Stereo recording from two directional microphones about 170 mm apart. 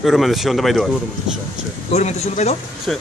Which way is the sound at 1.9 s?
40° left (ahead or behind).